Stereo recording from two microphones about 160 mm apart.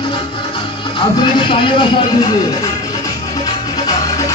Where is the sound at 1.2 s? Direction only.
30° left (ahead or behind).